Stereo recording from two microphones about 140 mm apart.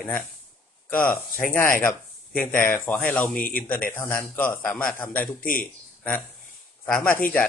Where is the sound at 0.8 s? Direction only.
10° left (ahead or behind).